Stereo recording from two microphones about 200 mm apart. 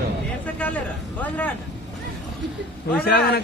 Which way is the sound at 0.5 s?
5° left (ahead or behind).